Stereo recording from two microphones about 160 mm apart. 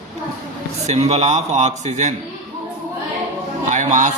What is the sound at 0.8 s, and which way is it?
A man's voice, 45° right (ahead or behind).